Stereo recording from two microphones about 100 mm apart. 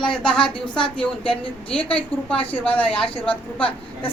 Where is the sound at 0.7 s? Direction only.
55° left (ahead or behind).